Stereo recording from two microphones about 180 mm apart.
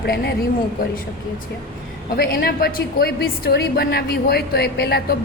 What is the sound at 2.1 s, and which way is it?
A woman's voice, 55° left (ahead or behind).